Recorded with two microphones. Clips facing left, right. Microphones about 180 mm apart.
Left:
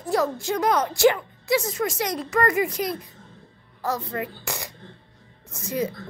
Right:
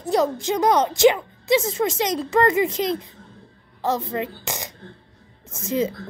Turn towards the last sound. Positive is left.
turn(degrees=-25)  # may be behind; listen again after turning